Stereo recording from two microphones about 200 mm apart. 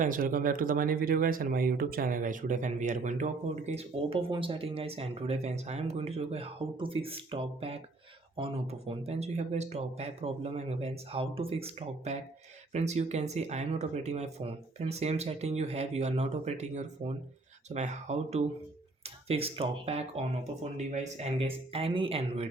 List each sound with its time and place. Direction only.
0.0 s speech: 45° right (ahead or behind)